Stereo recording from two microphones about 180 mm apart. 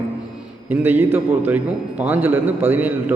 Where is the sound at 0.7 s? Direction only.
10° right (ahead or behind).